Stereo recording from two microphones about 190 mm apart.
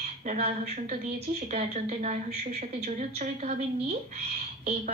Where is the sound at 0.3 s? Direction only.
35° right (ahead or behind).